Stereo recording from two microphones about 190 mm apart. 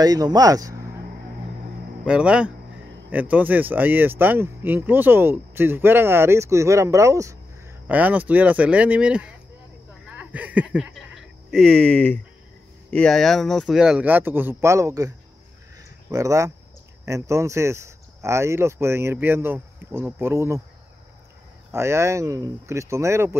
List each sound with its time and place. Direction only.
0.0 s speech: 20° right (ahead or behind)
2.0 s speech: 5° right (ahead or behind)
21.7 s speech: 15° right (ahead or behind)